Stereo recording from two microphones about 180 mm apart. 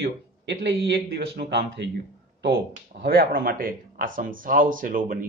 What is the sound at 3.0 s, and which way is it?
Speech, 55° right (ahead or behind).